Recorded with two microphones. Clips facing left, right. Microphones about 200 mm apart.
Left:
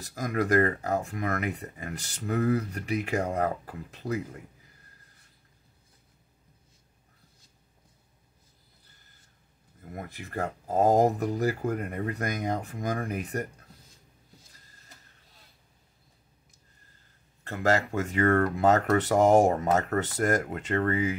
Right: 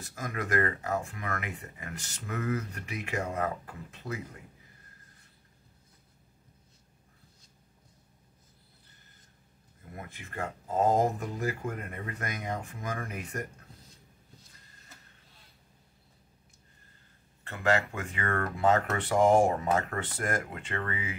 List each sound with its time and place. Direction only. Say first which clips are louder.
0.0 s speech: left 7 dB; 40° left (ahead or behind)
9.9 s speech: left 5 dB; 40° left (ahead or behind)
17.5 s speech: left 3 dB; 40° left (ahead or behind)